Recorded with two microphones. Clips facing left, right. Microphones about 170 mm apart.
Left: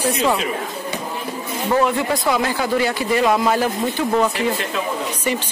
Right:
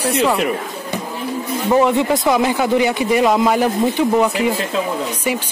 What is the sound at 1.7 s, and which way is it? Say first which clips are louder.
Speech: right 4 dB; 20° right (ahead or behind).